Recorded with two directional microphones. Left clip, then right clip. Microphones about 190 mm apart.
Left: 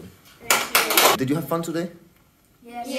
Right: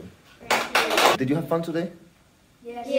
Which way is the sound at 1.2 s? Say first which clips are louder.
Even; 15° left (ahead or behind).